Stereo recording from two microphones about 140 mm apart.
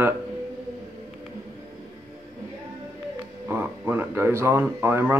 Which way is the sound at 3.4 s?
15° right (ahead or behind).